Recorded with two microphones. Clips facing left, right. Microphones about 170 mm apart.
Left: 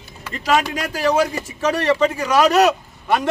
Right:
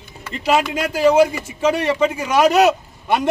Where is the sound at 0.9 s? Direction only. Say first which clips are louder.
Right 5 dB; 20° right (ahead or behind).